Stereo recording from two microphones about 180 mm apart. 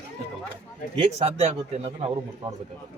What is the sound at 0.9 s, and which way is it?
Speech, 35° right (ahead or behind).